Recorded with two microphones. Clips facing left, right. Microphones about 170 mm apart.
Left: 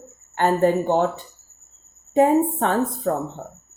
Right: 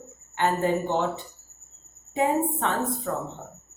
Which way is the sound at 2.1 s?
45° left (ahead or behind).